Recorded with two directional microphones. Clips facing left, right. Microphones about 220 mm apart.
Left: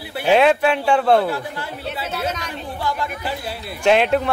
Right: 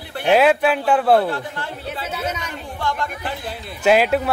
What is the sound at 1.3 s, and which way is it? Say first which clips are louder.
A man's voice: even; 10° left (ahead or behind).